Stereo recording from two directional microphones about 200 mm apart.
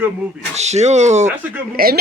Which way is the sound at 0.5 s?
35° right (ahead or behind).